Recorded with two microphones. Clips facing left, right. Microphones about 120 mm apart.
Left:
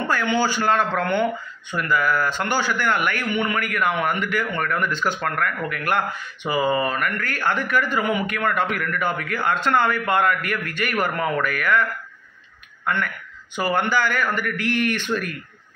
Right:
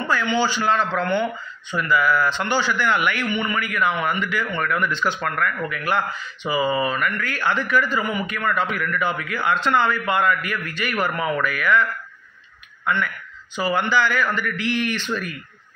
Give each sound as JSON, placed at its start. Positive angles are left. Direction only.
{"t": 0.4, "sound": "a man's voice", "side_deg": 50}
{"t": 12.8, "sound": "a man's voice", "side_deg": 50}